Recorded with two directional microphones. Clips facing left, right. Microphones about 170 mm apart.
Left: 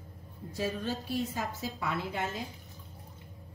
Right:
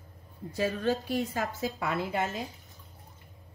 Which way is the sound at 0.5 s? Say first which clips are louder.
Right 5 dB; 65° right (ahead or behind).